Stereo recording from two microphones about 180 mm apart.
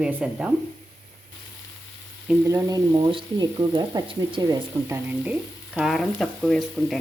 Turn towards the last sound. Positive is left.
turn(degrees=0)  # may be behind; listen again after turning